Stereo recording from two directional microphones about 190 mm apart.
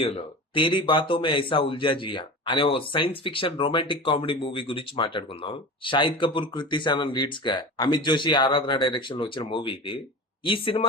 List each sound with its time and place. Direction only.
0.0 s a man's voice: 30° left (ahead or behind)